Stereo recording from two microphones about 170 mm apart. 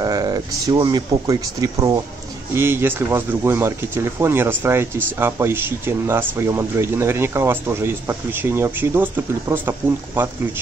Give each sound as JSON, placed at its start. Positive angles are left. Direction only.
{"t": 0.0, "sound": "speech", "side_deg": -20}